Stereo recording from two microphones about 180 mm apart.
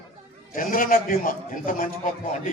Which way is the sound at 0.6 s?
50° left (ahead or behind).